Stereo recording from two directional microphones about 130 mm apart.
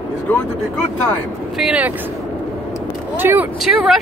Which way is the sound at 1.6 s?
10° right (ahead or behind).